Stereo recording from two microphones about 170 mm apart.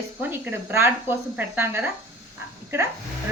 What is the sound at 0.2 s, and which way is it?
A woman's voice, 15° right (ahead or behind).